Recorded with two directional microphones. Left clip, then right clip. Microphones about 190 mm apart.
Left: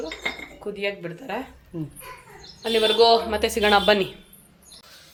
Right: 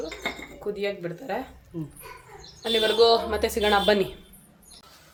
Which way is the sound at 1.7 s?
55° left (ahead or behind).